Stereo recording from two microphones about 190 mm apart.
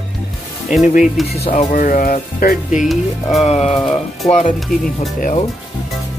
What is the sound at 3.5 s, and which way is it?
Music, 30° left (ahead or behind).